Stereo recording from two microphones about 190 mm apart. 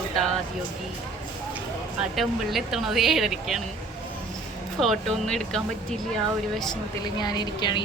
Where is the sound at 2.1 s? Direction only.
Centre (ahead or behind).